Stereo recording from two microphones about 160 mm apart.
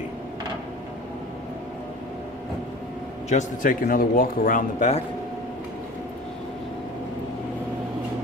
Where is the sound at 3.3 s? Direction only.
55° left (ahead or behind).